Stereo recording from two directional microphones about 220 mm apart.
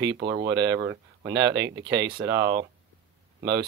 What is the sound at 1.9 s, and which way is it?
Speech, 15° right (ahead or behind).